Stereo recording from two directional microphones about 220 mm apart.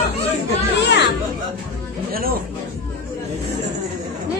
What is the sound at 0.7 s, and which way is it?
Chatter, 50° left (ahead or behind).